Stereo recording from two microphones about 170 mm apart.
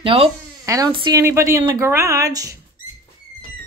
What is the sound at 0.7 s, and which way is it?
Speech, 20° right (ahead or behind).